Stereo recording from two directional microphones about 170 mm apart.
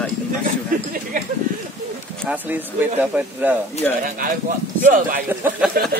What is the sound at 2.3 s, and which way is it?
Speech, 10° right (ahead or behind).